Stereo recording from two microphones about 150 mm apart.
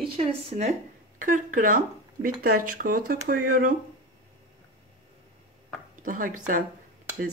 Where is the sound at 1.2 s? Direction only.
60° right (ahead or behind).